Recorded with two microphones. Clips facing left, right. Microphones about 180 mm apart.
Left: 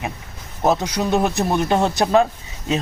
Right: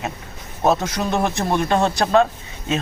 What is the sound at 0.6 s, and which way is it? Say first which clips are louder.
Speech: even; 15° left (ahead or behind).